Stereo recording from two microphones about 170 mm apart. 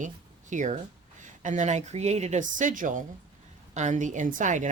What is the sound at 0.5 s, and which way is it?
Speech, 45° right (ahead or behind).